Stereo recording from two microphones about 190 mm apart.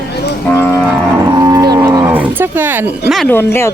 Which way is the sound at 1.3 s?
20° right (ahead or behind).